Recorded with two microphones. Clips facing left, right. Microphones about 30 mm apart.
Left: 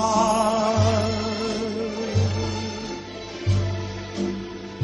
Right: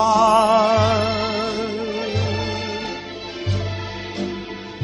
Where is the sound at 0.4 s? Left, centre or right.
Right.